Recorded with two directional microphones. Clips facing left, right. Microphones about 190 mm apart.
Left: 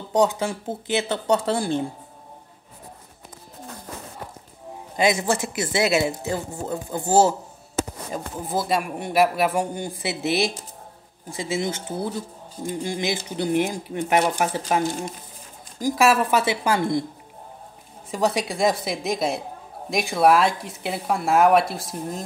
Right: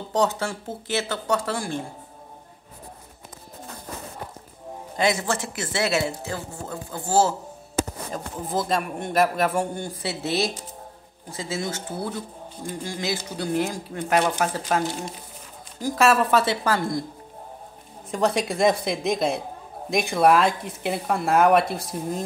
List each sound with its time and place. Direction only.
0.1 s speech: 15° left (ahead or behind)
4.9 s speech: 15° left (ahead or behind)
8.1 s speech: 5° left (ahead or behind)
15.8 s speech: 10° left (ahead or behind)
18.1 s speech: 5° left (ahead or behind)